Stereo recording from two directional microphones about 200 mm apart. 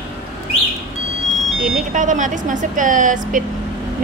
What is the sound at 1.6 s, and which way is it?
Speech, 40° right (ahead or behind).